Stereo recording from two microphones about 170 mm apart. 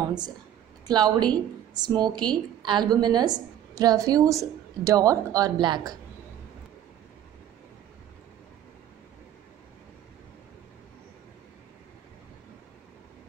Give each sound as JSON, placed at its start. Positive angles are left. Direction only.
{"t": 0.8, "sound": "a woman's voice", "side_deg": -25}